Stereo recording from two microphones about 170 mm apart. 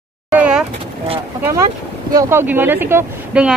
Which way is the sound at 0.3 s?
5° right (ahead or behind).